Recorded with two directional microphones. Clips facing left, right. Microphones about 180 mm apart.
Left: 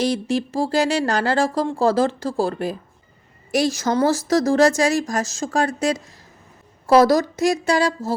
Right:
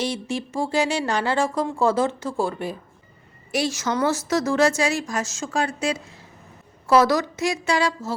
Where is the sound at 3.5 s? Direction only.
40° left (ahead or behind).